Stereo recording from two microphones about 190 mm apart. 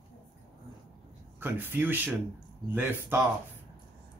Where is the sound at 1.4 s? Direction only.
10° right (ahead or behind).